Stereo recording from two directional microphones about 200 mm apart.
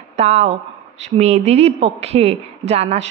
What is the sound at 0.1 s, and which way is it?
Speech, 35° right (ahead or behind).